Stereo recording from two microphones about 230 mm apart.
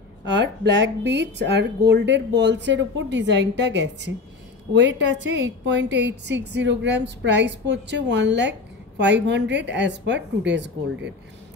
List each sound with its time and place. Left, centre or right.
0.2 s a woman's voice: right